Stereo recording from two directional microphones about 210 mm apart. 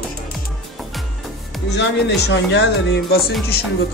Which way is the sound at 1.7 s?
55° left (ahead or behind).